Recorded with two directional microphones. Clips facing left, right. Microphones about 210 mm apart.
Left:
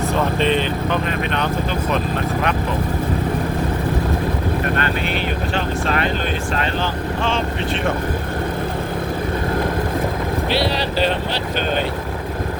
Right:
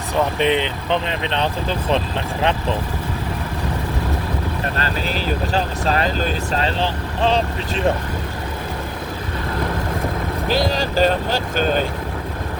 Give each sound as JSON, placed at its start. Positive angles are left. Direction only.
{"t": 0.3, "sound": "speech", "side_deg": -15}
{"t": 4.8, "sound": "speech", "side_deg": -35}
{"t": 10.8, "sound": "speech", "side_deg": -45}